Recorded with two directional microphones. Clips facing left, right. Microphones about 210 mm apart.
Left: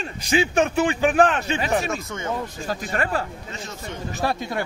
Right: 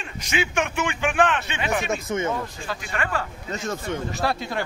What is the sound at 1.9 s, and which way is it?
Speech, 20° right (ahead or behind).